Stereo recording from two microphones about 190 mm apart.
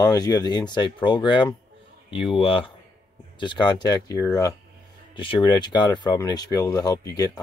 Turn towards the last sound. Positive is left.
turn(degrees=20)  # may be behind; listen again after turning